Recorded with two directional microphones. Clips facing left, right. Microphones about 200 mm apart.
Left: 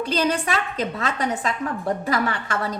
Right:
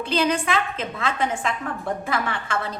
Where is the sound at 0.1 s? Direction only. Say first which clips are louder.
Right 2 dB; 40° left (ahead or behind).